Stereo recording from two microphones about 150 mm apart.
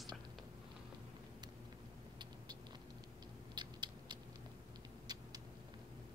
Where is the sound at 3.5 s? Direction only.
30° right (ahead or behind).